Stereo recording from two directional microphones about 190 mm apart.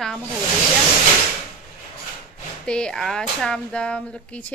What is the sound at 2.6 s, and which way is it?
A woman's voice, 5° left (ahead or behind).